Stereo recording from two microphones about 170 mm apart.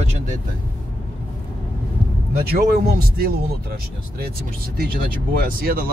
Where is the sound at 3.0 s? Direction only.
60° right (ahead or behind).